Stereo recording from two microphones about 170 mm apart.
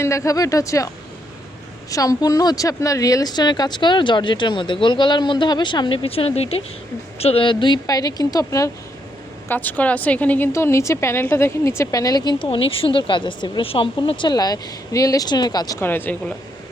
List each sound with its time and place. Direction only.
0.0 s speech: 15° left (ahead or behind)
1.9 s a woman's voice: 20° left (ahead or behind)